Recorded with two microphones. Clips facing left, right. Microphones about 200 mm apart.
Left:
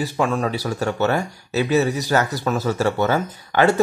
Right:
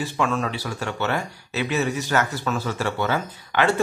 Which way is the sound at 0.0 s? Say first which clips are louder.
Left 3 dB; 35° left (ahead or behind).